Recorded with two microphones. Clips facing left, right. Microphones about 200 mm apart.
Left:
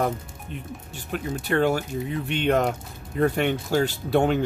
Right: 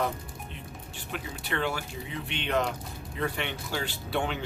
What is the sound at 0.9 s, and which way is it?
Speech, 45° left (ahead or behind).